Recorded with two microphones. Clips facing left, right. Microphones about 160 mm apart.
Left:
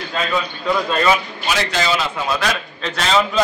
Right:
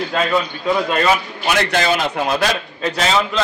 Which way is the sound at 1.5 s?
55° right (ahead or behind).